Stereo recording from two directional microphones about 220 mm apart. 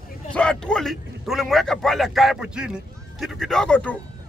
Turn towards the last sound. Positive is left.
turn(degrees=5)  # may be behind; listen again after turning